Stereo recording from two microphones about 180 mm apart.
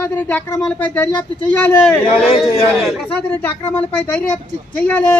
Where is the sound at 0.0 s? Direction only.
10° left (ahead or behind).